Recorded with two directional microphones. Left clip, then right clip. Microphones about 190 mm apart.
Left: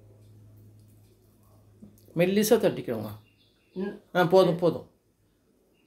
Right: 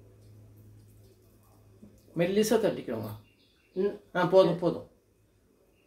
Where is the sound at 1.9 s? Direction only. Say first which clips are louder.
Left 3 dB; 45° left (ahead or behind).